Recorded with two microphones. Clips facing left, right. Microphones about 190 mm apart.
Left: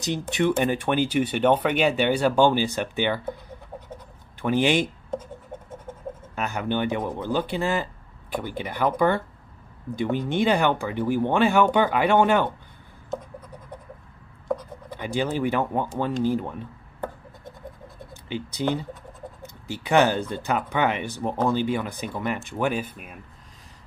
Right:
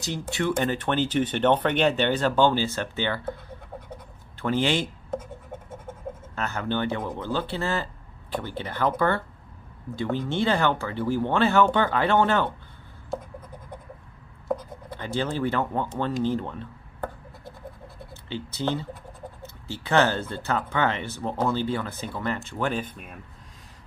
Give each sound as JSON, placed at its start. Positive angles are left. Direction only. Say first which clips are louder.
{"t": 0.0, "sound": "speech", "louder": "left 4 dB", "side_deg": 20}
{"t": 4.4, "sound": "speech", "louder": "left 3 dB", "side_deg": 15}
{"t": 6.3, "sound": "speech", "louder": "left 2 dB", "side_deg": 15}
{"t": 14.9, "sound": "speech", "louder": "left 2 dB", "side_deg": 15}
{"t": 18.1, "sound": "speech", "louder": "left 3 dB", "side_deg": 15}